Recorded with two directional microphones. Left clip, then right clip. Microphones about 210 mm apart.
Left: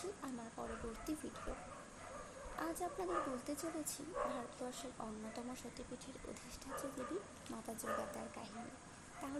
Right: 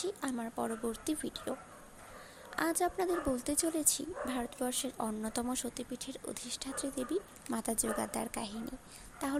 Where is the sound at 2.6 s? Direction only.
25° right (ahead or behind).